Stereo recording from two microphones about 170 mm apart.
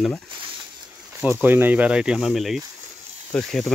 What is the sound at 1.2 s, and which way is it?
Speech, 10° right (ahead or behind).